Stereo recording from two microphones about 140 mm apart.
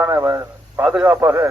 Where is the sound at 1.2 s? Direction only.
20° right (ahead or behind).